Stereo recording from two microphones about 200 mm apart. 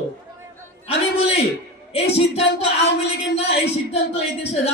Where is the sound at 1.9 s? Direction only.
30° left (ahead or behind).